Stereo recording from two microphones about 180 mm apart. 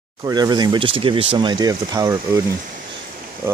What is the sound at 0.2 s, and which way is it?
Speech, 25° right (ahead or behind).